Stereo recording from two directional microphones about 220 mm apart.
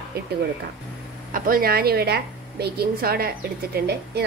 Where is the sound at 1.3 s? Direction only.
40° right (ahead or behind).